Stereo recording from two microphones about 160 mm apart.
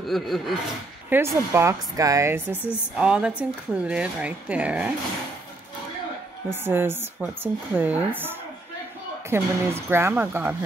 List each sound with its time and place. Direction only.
0.0 s speech: centre (ahead or behind)
1.1 s speech: 15° right (ahead or behind)
3.0 s speech: 5° right (ahead or behind)
6.5 s speech: 15° right (ahead or behind)